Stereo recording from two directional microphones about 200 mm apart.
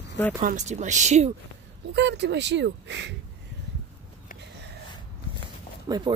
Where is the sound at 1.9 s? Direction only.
60° right (ahead or behind).